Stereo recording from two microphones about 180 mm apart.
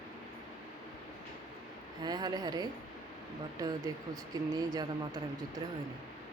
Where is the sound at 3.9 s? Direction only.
20° right (ahead or behind).